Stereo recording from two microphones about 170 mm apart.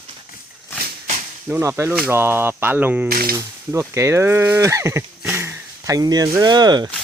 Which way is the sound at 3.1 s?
60° right (ahead or behind).